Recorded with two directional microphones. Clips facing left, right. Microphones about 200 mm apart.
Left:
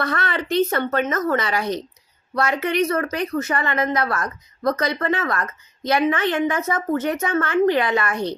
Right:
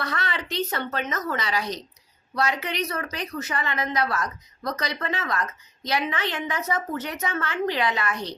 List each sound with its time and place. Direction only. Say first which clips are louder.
0.0 s speech: left 6 dB; 55° left (ahead or behind)